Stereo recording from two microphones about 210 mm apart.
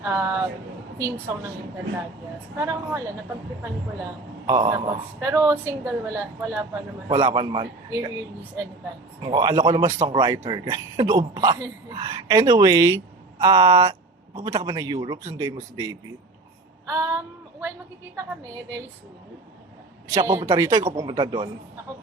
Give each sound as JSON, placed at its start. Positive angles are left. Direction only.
{"t": 0.0, "sound": "speech", "side_deg": -15}
{"t": 2.6, "sound": "a man's voice", "side_deg": -15}
{"t": 4.4, "sound": "speech", "side_deg": -20}
{"t": 5.2, "sound": "a man's voice", "side_deg": -15}
{"t": 9.2, "sound": "a man's voice", "side_deg": -20}
{"t": 16.8, "sound": "child singing", "side_deg": -10}
{"t": 20.1, "sound": "a man's voice", "side_deg": -15}